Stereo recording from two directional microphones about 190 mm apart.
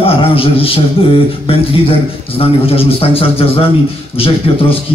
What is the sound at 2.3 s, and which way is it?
Speech, 30° left (ahead or behind).